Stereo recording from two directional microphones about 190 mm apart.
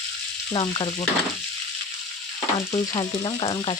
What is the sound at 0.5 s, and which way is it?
Frying, 25° left (ahead or behind).